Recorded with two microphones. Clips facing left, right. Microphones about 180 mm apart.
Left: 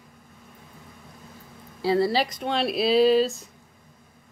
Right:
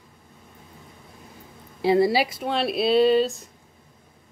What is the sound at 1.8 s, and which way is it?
Speech, 15° right (ahead or behind).